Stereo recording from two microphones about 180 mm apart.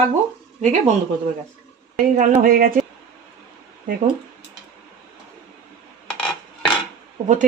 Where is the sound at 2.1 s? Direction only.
50° right (ahead or behind).